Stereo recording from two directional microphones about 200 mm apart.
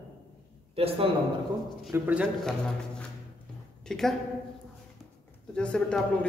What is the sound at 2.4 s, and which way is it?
A woman's voice, 5° left (ahead or behind).